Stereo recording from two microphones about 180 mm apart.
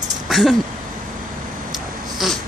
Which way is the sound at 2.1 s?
Centre (ahead or behind).